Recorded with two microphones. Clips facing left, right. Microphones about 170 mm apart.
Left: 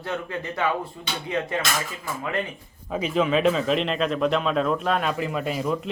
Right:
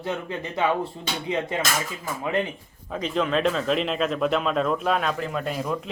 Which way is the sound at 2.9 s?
5° left (ahead or behind).